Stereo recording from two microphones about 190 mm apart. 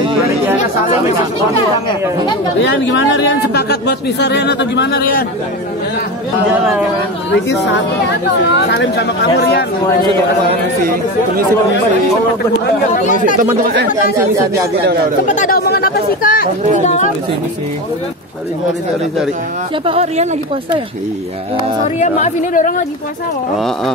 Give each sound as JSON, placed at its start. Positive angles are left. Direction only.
{"t": 2.6, "sound": "speech", "side_deg": 75}
{"t": 7.2, "sound": "a woman's voice", "side_deg": 70}
{"t": 12.9, "sound": "speech", "side_deg": 45}
{"t": 13.4, "sound": "speech", "side_deg": -45}
{"t": 15.2, "sound": "speech", "side_deg": 40}
{"t": 16.8, "sound": "speech", "side_deg": 35}
{"t": 19.9, "sound": "speech", "side_deg": -35}
{"t": 21.8, "sound": "speech", "side_deg": 40}